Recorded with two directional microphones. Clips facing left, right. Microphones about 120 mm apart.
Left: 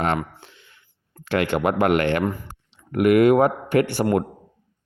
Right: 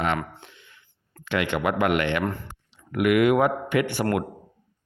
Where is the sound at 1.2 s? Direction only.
40° left (ahead or behind).